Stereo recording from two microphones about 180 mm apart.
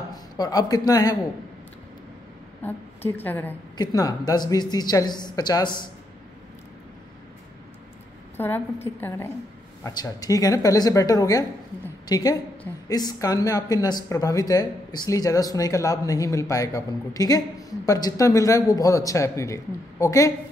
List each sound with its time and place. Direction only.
0.1 s speech: 20° left (ahead or behind)
2.6 s a woman's voice: 10° left (ahead or behind)
3.7 s speech: 20° left (ahead or behind)
8.4 s a woman's voice: 10° left (ahead or behind)